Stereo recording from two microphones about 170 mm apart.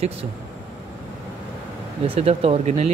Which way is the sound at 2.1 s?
35° right (ahead or behind).